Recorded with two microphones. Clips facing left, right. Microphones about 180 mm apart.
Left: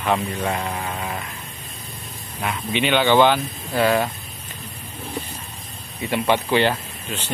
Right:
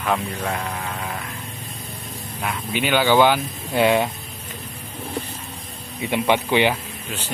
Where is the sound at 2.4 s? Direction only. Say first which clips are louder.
Left 2 dB; centre (ahead or behind).